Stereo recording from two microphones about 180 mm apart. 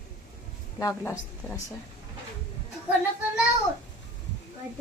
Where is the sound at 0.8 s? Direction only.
15° left (ahead or behind).